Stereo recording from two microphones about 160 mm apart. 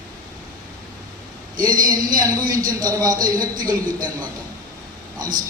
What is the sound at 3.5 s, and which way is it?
Speech, 60° right (ahead or behind).